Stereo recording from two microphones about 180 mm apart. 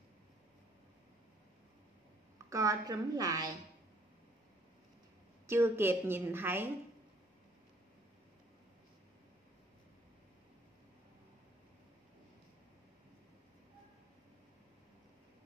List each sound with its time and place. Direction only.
2.5 s a woman's voice: 20° right (ahead or behind)
5.5 s a woman's voice: 15° right (ahead or behind)